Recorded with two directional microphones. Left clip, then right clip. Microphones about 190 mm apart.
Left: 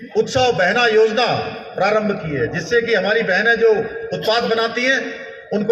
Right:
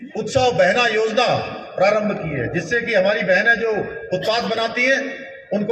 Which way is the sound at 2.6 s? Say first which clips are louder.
Left 1 dB; 25° right (ahead or behind).